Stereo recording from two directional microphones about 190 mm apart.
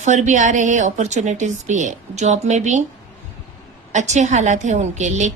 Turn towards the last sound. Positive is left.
turn(degrees=-40)  # may be behind; listen again after turning